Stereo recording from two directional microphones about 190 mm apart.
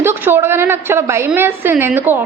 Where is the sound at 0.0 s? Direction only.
10° right (ahead or behind).